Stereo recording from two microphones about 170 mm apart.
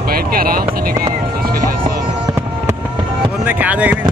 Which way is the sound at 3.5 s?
10° right (ahead or behind).